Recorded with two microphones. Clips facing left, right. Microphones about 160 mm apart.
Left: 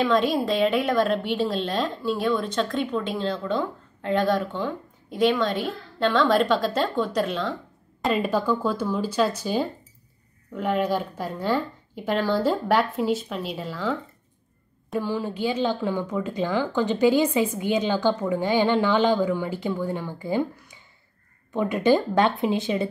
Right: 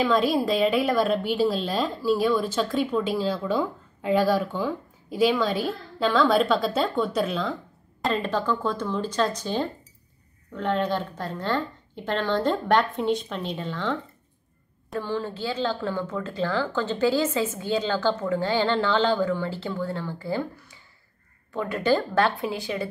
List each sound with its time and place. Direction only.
0.0 s a woman's voice: centre (ahead or behind)
8.1 s speech: 10° left (ahead or behind)
15.0 s speech: 10° left (ahead or behind)